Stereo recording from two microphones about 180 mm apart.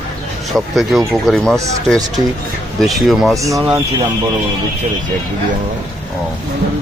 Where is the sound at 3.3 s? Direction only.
15° right (ahead or behind).